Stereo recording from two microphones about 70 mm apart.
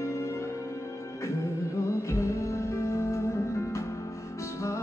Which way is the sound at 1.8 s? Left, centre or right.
Left.